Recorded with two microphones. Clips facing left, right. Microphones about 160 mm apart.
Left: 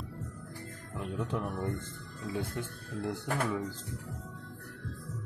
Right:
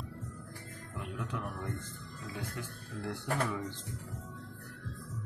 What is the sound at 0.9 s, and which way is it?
Speech, 30° left (ahead or behind).